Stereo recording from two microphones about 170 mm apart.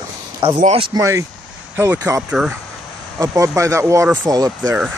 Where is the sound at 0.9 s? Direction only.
20° right (ahead or behind).